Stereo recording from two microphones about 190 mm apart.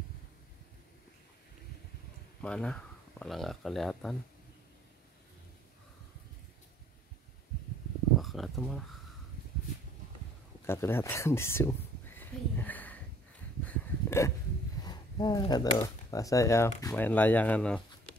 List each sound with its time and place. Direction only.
2.4 s speech: 5° left (ahead or behind)
8.2 s speech: centre (ahead or behind)
10.7 s speech: 10° left (ahead or behind)
12.2 s a sound: 10° left (ahead or behind)
14.8 s speech: 20° left (ahead or behind); by 17.8 s 5° left (ahead or behind)